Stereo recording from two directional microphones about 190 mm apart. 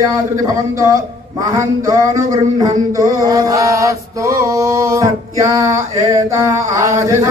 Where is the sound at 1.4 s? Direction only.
15° right (ahead or behind).